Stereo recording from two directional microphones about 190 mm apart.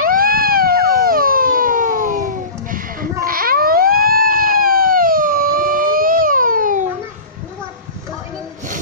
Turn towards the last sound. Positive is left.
turn(degrees=-45)  # may be behind; listen again after turning